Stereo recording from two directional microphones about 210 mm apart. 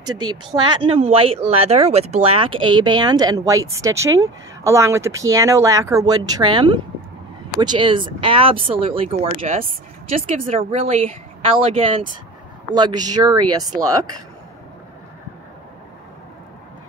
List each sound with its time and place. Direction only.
0.7 s speech: 25° right (ahead or behind)
10.1 s speech: 35° right (ahead or behind); by 14.0 s 15° right (ahead or behind)